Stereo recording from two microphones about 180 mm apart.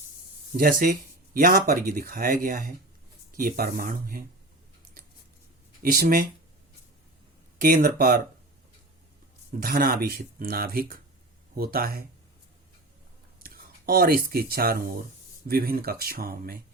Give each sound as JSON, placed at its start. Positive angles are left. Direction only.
{"t": 0.5, "sound": "speech", "side_deg": -55}
{"t": 5.8, "sound": "speech", "side_deg": -55}
{"t": 7.6, "sound": "speech", "side_deg": -55}
{"t": 9.5, "sound": "speech", "side_deg": -50}
{"t": 13.4, "sound": "speech", "side_deg": -55}